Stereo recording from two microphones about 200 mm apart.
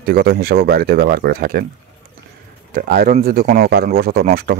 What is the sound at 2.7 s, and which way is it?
Speech, 45° right (ahead or behind).